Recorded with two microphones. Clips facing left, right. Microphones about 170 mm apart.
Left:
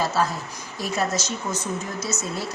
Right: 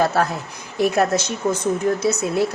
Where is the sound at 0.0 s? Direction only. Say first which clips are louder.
Right 4 dB; 60° right (ahead or behind).